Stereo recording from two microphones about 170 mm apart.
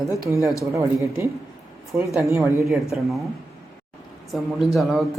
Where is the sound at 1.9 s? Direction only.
15° right (ahead or behind).